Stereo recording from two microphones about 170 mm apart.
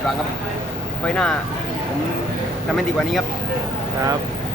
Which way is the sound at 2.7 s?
Centre (ahead or behind).